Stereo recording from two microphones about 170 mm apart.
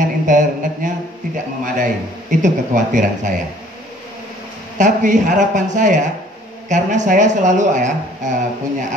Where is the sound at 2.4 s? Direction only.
50° right (ahead or behind).